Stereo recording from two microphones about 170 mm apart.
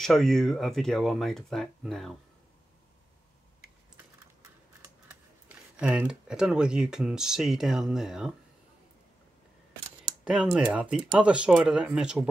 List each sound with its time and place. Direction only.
0.0 s speech: centre (ahead or behind)
3.9 s a sound: 15° right (ahead or behind)
5.5 s speech: 10° right (ahead or behind)
10.2 s speech: 5° right (ahead or behind)